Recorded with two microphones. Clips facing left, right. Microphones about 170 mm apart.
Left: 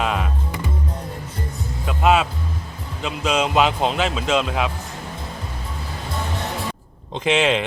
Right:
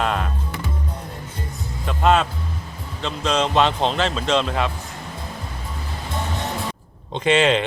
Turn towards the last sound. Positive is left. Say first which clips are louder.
# right 1 dB
turn(degrees=0)  # may be behind; listen again after turning